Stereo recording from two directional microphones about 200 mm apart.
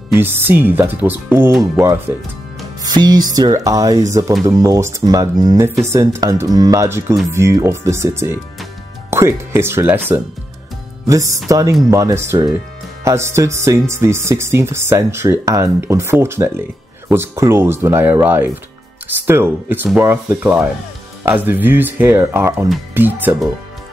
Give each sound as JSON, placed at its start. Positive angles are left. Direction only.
{"t": 0.1, "sound": "speech", "side_deg": -10}